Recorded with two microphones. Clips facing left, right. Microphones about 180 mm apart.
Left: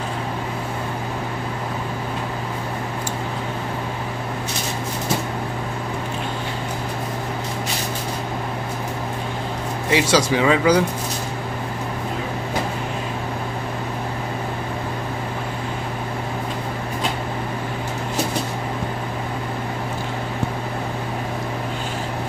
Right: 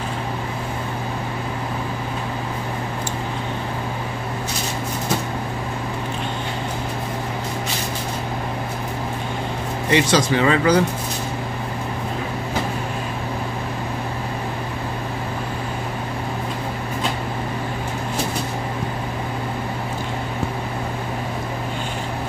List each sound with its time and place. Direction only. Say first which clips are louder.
9.8 s speech: even; 5° left (ahead or behind)